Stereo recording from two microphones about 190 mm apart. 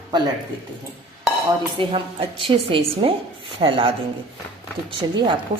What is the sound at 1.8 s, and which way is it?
A woman's voice, 30° right (ahead or behind).